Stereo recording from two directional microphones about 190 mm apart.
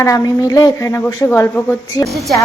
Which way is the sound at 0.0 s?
15° left (ahead or behind).